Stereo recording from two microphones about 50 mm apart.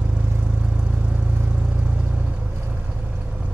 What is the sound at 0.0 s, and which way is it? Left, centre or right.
Vehicle, right.